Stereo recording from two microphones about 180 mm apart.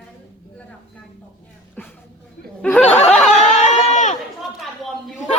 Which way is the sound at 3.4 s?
40° left (ahead or behind).